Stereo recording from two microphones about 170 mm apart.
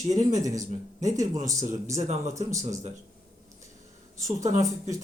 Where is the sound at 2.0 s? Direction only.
40° right (ahead or behind).